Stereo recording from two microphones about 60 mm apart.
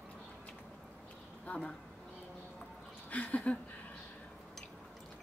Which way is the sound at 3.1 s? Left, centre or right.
Left.